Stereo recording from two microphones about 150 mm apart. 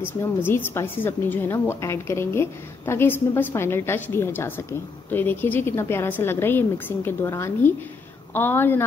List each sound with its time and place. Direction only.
0.7 s a woman's voice: 15° left (ahead or behind)